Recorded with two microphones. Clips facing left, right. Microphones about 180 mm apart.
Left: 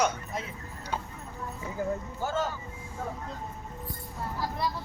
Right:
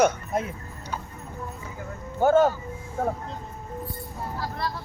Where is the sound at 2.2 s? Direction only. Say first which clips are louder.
Right 13 dB; 55° right (ahead or behind).